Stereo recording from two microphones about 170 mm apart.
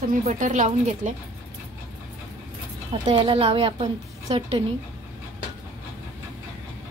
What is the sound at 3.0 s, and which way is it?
Speech, 30° right (ahead or behind).